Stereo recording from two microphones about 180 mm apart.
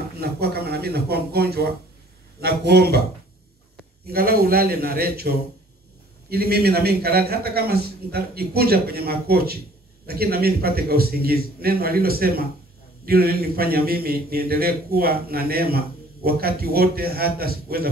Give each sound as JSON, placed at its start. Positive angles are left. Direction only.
{"t": 0.2, "sound": "a man's voice", "side_deg": -60}